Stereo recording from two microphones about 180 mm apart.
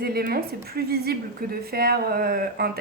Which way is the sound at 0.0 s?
60° right (ahead or behind).